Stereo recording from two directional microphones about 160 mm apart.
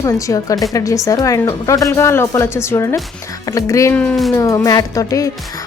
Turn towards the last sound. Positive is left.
turn(degrees=20)  # may be behind; listen again after turning